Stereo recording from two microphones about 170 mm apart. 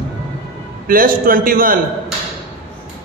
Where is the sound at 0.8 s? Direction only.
55° right (ahead or behind).